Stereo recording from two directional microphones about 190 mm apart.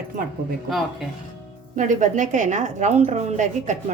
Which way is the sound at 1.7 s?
40° right (ahead or behind).